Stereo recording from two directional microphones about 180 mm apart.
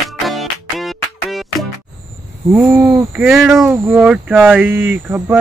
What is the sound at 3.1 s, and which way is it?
Speech, 5° right (ahead or behind).